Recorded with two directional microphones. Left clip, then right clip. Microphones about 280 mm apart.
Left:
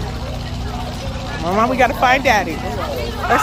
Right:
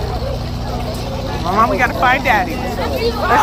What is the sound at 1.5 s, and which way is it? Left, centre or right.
Speech, centre.